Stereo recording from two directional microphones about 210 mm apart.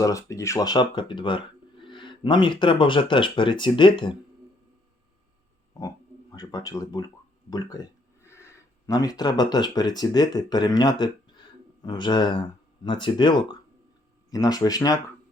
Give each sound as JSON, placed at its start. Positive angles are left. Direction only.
{"t": 0.0, "sound": "speech", "side_deg": 15}
{"t": 6.3, "sound": "speech", "side_deg": 20}